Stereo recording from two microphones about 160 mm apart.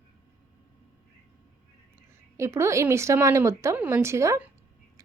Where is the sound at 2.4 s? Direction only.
15° right (ahead or behind).